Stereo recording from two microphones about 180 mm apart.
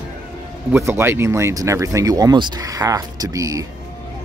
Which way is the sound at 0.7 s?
15° right (ahead or behind).